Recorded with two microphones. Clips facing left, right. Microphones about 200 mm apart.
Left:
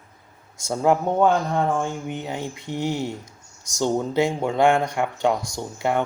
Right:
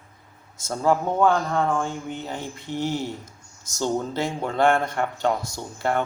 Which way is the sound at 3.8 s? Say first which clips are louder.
Left 4 dB; 15° left (ahead or behind).